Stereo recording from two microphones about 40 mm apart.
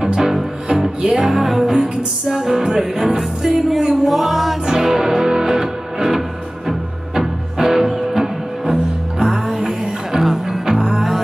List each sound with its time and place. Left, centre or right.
0.0 s music: centre
4.6 s music: centre
10.8 s music: centre